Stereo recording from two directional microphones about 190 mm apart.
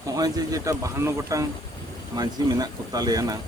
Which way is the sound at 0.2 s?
15° right (ahead or behind).